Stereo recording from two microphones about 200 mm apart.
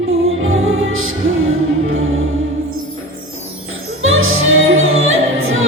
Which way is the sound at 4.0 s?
90° right.